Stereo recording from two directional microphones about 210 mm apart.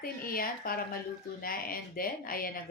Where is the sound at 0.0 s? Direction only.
45° left (ahead or behind).